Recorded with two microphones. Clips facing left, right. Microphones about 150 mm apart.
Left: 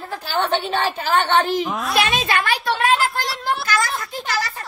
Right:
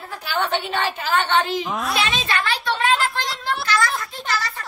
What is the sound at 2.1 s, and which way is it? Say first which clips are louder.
Speech: left 3 dB; 45° left (ahead or behind).